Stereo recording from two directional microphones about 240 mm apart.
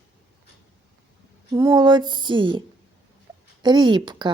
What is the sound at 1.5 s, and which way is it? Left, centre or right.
Speech, centre.